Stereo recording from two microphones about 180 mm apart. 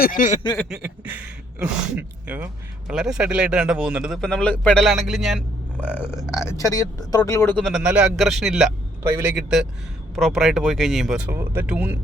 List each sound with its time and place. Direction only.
0.0 s a sound: 50° left (ahead or behind)
0.7 s speech: 10° right (ahead or behind)
5.8 s speech: 10° left (ahead or behind)
7.5 s a man's voice: centre (ahead or behind)